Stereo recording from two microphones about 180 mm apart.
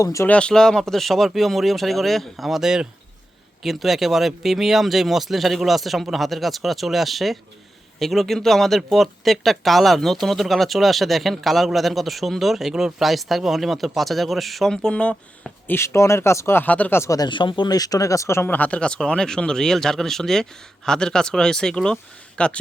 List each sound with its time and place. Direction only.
0.0 s speech: 15° left (ahead or behind)
0.3 s speech: 5° left (ahead or behind)